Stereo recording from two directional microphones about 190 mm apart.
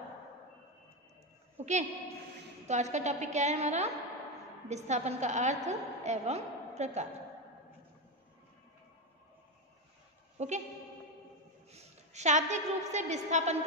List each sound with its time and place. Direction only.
1.6 s a woman's voice: 35° right (ahead or behind)
10.3 s a sound: 40° right (ahead or behind)
11.7 s a woman's voice: 35° right (ahead or behind)